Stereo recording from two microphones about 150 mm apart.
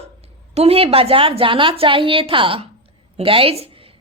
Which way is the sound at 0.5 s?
40° right (ahead or behind).